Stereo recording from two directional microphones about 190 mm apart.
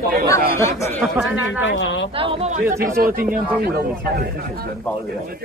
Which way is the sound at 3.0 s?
55° right (ahead or behind).